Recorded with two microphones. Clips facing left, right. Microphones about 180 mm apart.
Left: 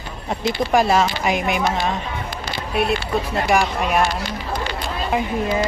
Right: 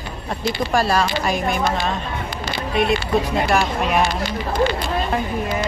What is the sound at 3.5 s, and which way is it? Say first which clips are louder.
Speech: left 2 dB; 5° left (ahead or behind).